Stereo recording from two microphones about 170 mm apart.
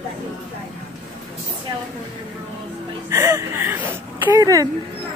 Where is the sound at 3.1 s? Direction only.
15° right (ahead or behind).